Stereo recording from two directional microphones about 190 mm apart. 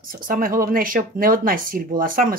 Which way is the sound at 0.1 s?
45° right (ahead or behind).